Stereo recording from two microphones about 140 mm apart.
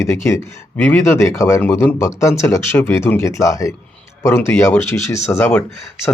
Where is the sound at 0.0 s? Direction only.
20° left (ahead or behind).